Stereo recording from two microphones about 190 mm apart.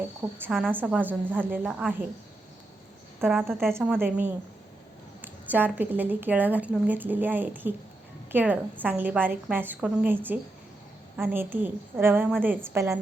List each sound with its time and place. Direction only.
0.2 s a woman's voice: 10° right (ahead or behind)
3.2 s a woman's voice: 10° right (ahead or behind)
11.2 s a woman's voice: 10° right (ahead or behind)